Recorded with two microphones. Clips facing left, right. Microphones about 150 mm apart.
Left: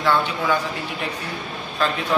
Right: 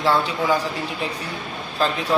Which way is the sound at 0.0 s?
35° right (ahead or behind).